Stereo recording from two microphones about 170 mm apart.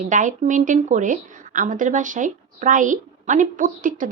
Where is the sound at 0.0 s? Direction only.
50° right (ahead or behind).